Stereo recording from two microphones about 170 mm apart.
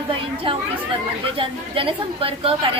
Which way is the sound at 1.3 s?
30° right (ahead or behind).